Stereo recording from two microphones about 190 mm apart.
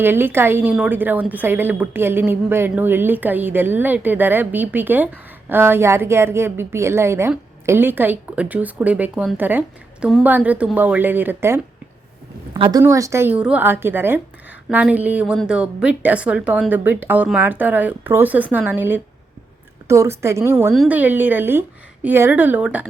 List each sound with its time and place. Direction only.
0.0 s a woman's voice: 10° right (ahead or behind)
12.5 s a woman's voice: 25° right (ahead or behind); by 22.9 s 10° right (ahead or behind)